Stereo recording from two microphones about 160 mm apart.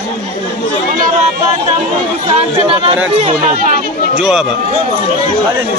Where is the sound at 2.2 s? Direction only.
40° right (ahead or behind).